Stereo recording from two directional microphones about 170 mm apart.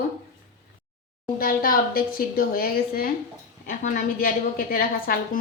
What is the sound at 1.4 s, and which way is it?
A woman's voice, 55° left (ahead or behind).